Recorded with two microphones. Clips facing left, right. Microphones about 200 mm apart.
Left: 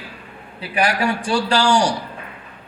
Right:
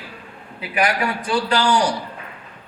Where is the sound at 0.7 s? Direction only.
30° left (ahead or behind).